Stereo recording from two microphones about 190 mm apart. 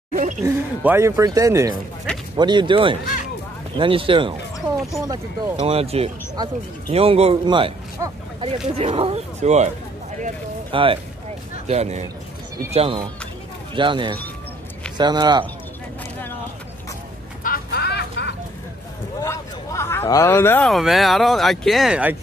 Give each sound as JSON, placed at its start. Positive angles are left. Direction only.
{"t": 0.1, "sound": "a sound", "side_deg": -40}
{"t": 0.5, "sound": "speech", "side_deg": -15}
{"t": 5.6, "sound": "speech", "side_deg": -30}
{"t": 10.7, "sound": "speech", "side_deg": -25}
{"t": 17.4, "sound": "a sound", "side_deg": 55}
{"t": 19.2, "sound": "speech", "side_deg": 15}